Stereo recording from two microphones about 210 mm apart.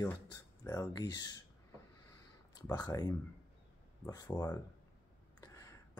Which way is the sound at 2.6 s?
20° left (ahead or behind).